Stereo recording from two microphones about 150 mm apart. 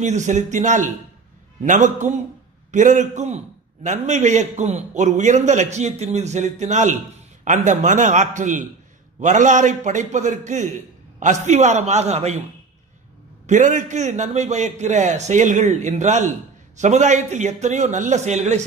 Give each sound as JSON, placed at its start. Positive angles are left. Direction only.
{"t": 0.0, "sound": "a man's voice", "side_deg": -55}
{"t": 13.5, "sound": "a man's voice", "side_deg": -55}